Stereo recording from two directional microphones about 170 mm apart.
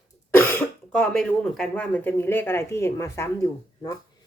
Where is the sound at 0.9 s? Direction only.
5° left (ahead or behind).